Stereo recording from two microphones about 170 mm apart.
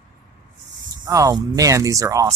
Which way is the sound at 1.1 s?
20° right (ahead or behind).